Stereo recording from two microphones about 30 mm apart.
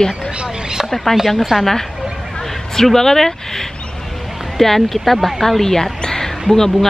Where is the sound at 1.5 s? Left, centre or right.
Right.